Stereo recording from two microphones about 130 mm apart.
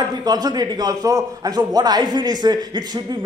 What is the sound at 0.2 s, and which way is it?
A man's voice, 30° right (ahead or behind).